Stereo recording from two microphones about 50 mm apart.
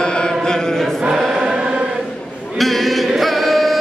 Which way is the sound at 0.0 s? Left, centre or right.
Centre.